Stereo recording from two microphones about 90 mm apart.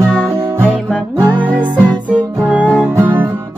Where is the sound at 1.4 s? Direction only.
20° right (ahead or behind).